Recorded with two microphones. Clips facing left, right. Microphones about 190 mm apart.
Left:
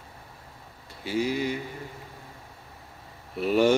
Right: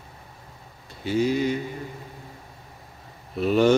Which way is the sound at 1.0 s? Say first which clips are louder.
Right 4 dB; 20° right (ahead or behind).